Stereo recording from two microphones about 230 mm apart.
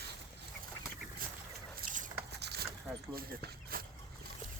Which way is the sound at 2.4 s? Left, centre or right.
Right.